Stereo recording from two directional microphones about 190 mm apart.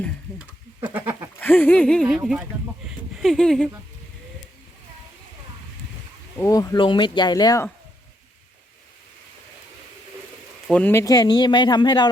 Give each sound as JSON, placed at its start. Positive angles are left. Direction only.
{"t": 0.3, "sound": "goat", "side_deg": -10}
{"t": 1.4, "sound": "speech", "side_deg": 10}
{"t": 6.4, "sound": "speech", "side_deg": 15}
{"t": 10.7, "sound": "speech", "side_deg": 10}